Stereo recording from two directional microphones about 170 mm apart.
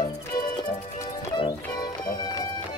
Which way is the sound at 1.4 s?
25° left (ahead or behind).